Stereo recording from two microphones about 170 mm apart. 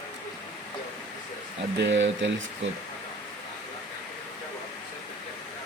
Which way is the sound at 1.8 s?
90° right.